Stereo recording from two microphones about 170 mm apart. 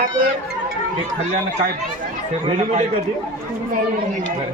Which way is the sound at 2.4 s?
30° right (ahead or behind).